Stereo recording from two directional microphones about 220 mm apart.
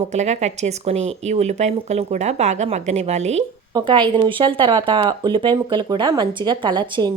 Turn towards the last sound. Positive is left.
turn(degrees=-20)  # may be behind; listen again after turning